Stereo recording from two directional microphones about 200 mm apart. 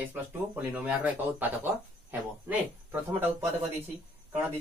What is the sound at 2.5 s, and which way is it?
Speech, 10° right (ahead or behind).